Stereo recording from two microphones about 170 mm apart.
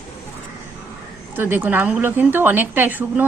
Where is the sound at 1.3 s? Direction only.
10° right (ahead or behind).